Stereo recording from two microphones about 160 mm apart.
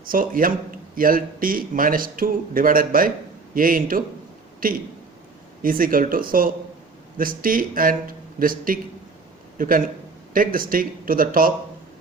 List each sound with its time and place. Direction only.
0.1 s a man's voice: 60° right (ahead or behind)